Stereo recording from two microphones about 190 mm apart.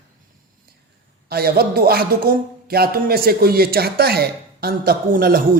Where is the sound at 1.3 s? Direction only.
55° right (ahead or behind).